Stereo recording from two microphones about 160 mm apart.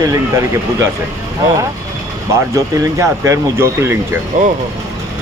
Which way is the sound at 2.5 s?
20° right (ahead or behind).